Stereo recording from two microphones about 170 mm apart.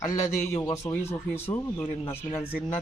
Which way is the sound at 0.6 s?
20° left (ahead or behind).